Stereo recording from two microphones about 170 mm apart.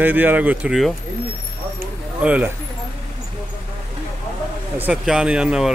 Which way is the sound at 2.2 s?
10° right (ahead or behind).